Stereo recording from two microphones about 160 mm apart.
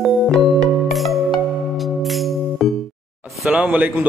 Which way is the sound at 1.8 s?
Centre (ahead or behind).